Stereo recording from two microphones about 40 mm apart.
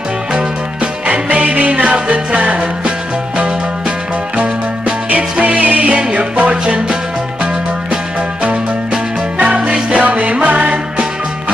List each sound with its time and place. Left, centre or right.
1.0 s music: right
5.1 s music: right
9.4 s music: right